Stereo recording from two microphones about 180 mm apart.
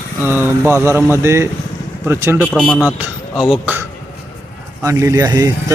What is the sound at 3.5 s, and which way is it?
Speech, 10° right (ahead or behind).